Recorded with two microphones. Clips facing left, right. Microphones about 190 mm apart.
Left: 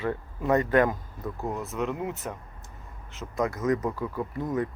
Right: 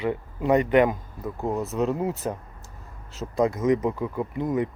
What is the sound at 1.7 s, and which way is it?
Speech, 35° right (ahead or behind).